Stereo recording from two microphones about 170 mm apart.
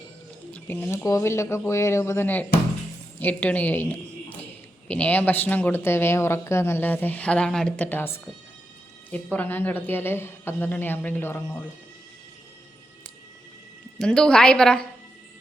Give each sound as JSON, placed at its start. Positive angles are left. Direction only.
{"t": 0.5, "sound": "a woman's voice", "side_deg": 10}
{"t": 14.0, "sound": "a woman's voice", "side_deg": 5}